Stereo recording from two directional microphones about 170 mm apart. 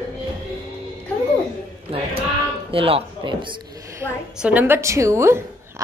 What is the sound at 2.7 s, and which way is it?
Speech, 35° right (ahead or behind).